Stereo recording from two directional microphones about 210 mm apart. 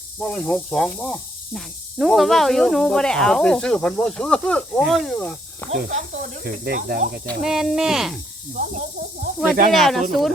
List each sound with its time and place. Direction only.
0.2 s speech: 5° left (ahead or behind)
5.7 s speech: 45° right (ahead or behind)
7.4 s speech: centre (ahead or behind)
8.5 s speech: 45° right (ahead or behind)
9.7 s speech: centre (ahead or behind)